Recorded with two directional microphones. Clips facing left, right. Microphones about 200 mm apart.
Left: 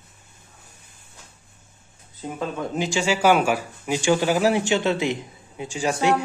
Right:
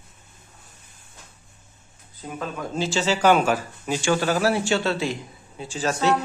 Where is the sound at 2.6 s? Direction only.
15° left (ahead or behind).